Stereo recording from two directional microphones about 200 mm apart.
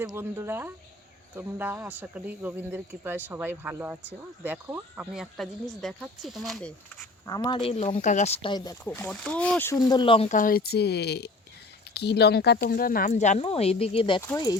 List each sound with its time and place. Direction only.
0.1 s speech: 15° right (ahead or behind); by 7.1 s 5° left (ahead or behind)
7.3 s speech: 20° left (ahead or behind)
8.8 s speech: 5° left (ahead or behind)
9.7 s speech: 20° left (ahead or behind)
10.3 s speech: 45° left (ahead or behind); by 14.2 s 25° left (ahead or behind)
14.2 s speech: 15° left (ahead or behind)